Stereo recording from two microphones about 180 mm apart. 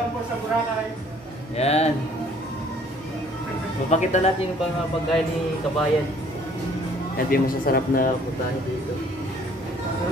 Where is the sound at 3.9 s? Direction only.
40° left (ahead or behind).